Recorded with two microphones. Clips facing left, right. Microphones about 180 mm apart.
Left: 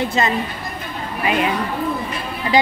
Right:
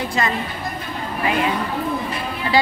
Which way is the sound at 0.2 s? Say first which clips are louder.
Left 2 dB; 25° left (ahead or behind).